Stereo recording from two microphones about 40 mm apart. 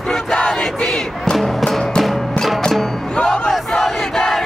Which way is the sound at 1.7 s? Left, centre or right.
Centre.